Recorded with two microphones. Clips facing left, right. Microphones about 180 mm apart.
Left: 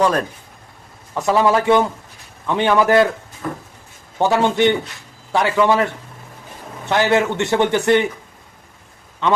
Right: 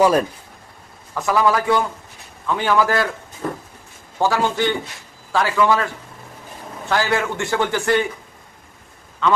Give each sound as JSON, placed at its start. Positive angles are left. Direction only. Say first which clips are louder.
{"t": 0.0, "sound": "speech", "louder": "right 2 dB", "side_deg": -10}
{"t": 1.1, "sound": "a man's voice", "louder": "left 2 dB", "side_deg": 25}
{"t": 4.2, "sound": "a man's voice", "louder": "left 4 dB", "side_deg": 20}